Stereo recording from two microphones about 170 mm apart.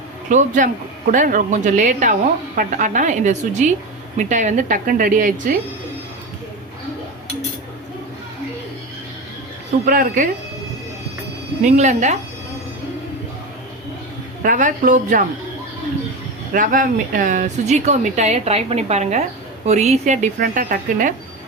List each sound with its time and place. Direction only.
0.3 s a woman's voice: 50° right (ahead or behind)
9.8 s speech: 55° right (ahead or behind)
11.6 s a woman's voice: 45° right (ahead or behind)
14.4 s a woman's voice: 50° right (ahead or behind)
16.5 s a woman's voice: 55° right (ahead or behind)